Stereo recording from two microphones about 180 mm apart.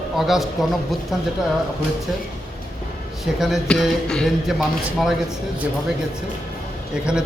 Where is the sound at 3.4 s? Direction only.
Centre (ahead or behind).